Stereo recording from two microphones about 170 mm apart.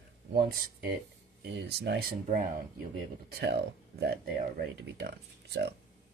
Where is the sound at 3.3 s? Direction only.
70° right (ahead or behind).